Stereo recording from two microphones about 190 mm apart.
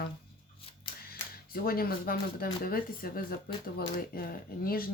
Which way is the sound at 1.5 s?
50° left (ahead or behind).